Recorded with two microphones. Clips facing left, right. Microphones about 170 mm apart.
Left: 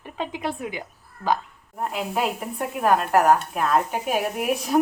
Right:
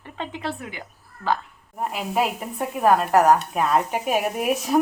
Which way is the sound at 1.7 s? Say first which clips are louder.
Right 2 dB; 5° right (ahead or behind).